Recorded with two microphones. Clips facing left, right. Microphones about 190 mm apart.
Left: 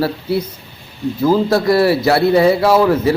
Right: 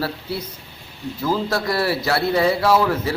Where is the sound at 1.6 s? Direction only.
10° left (ahead or behind).